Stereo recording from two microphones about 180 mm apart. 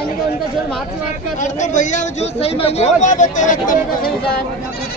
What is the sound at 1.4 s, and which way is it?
Speech, 45° left (ahead or behind).